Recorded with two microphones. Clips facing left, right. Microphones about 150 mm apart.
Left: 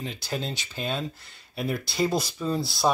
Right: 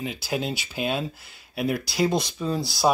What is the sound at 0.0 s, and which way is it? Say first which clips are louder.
Speech: right 4 dB; 5° right (ahead or behind).